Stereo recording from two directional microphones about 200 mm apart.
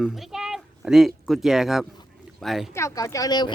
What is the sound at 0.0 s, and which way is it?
Speech, centre (ahead or behind).